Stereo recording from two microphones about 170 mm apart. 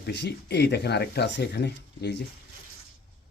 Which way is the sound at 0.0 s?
80° left.